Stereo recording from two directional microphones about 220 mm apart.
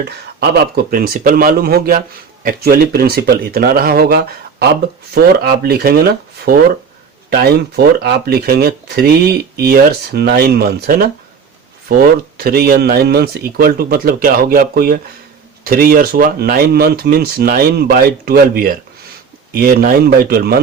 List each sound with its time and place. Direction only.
0.9 s speech: 40° right (ahead or behind)